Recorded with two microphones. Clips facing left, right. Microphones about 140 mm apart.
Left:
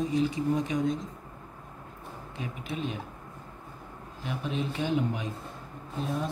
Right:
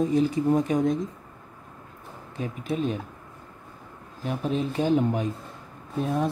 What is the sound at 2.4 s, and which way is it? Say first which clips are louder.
Speech: right 7 dB; 40° right (ahead or behind).